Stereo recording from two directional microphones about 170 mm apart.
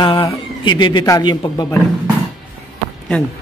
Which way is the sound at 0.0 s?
25° left (ahead or behind).